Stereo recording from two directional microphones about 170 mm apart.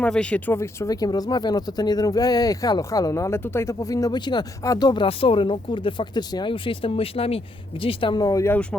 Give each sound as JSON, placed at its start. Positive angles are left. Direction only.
{"t": 0.0, "sound": "speech", "side_deg": 5}